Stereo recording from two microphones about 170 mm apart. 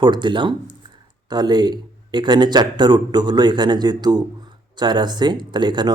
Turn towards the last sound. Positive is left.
turn(degrees=-25)  # may be behind; listen again after turning